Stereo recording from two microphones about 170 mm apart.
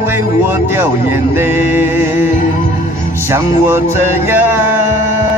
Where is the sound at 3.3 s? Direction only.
15° right (ahead or behind).